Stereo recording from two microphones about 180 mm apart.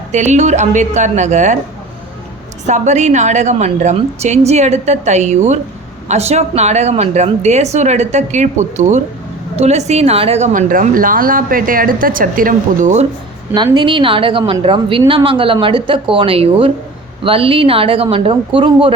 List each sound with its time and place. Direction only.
0.1 s a woman's voice: 40° right (ahead or behind)
2.6 s a woman's voice: 40° right (ahead or behind)
13.5 s a woman's voice: 25° right (ahead or behind)